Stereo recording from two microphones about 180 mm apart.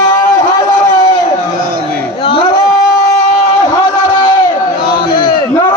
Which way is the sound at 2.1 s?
30° left (ahead or behind).